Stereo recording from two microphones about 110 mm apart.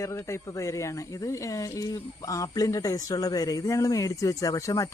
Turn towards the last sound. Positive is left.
turn(degrees=30)  # may be behind; listen again after turning